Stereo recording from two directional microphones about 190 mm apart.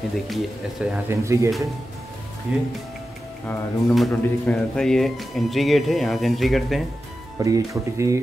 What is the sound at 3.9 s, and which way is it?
A man's voice, centre (ahead or behind).